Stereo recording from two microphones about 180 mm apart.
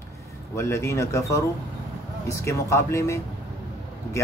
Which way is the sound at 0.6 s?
15° left (ahead or behind).